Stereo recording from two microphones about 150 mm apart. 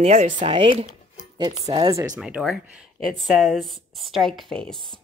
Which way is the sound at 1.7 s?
35° right (ahead or behind).